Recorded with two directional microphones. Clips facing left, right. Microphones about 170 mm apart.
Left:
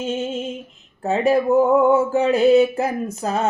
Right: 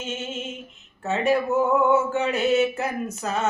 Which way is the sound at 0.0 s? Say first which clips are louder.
Left 7 dB; 35° left (ahead or behind).